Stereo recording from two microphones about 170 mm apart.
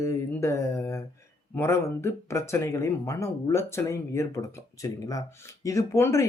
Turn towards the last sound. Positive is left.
turn(degrees=15)  # may be behind; listen again after turning